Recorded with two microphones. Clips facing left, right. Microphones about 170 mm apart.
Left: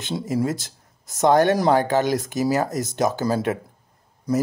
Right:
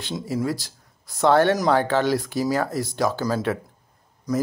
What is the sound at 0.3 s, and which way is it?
Speech, 20° left (ahead or behind).